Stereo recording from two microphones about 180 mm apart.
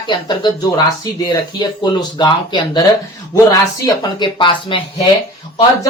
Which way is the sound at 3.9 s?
25° left (ahead or behind).